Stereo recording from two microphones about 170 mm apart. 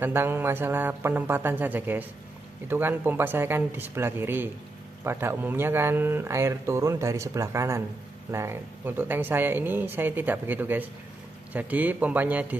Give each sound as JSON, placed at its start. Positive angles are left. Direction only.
{"t": 0.0, "sound": "speech", "side_deg": -15}